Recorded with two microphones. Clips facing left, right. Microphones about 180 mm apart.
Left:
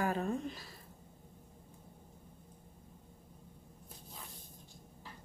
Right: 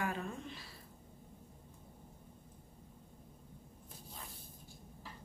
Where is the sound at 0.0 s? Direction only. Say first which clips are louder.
Left 6 dB; 40° left (ahead or behind).